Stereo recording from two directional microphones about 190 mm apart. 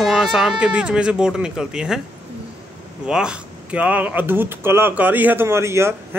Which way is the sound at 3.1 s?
5° right (ahead or behind).